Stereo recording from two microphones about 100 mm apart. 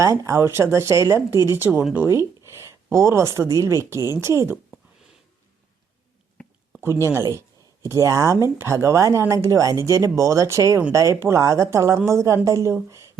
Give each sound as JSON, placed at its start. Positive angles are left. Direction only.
{"t": 0.0, "sound": "speech", "side_deg": -30}
{"t": 2.0, "sound": "a sound", "side_deg": -25}
{"t": 3.3, "sound": "speech", "side_deg": -30}
{"t": 6.8, "sound": "speech", "side_deg": -25}